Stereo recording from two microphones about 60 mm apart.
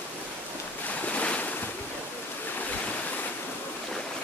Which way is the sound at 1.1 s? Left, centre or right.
Centre.